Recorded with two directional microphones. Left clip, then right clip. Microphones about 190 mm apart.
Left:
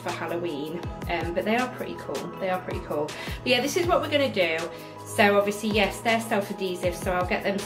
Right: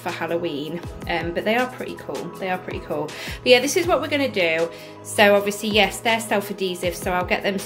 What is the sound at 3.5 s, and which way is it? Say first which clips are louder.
A woman's voice: right 6 dB; 35° right (ahead or behind).